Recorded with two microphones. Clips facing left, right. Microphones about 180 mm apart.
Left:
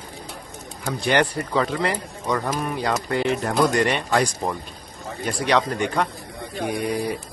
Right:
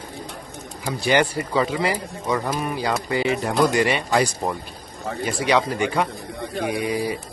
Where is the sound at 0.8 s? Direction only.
5° right (ahead or behind).